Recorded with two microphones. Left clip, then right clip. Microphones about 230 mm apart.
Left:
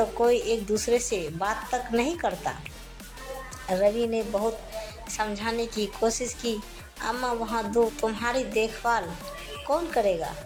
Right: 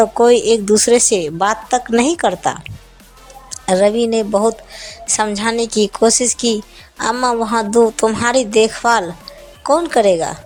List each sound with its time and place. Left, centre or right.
0.0 s a woman's voice: right